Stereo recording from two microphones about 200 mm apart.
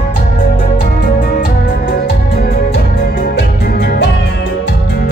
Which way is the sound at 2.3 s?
55° left (ahead or behind).